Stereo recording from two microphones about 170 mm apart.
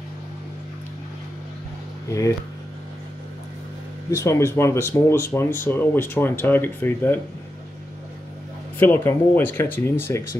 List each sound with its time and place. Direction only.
2.0 s speech: 20° left (ahead or behind)
4.1 s speech: 15° left (ahead or behind)
8.7 s speech: 15° left (ahead or behind)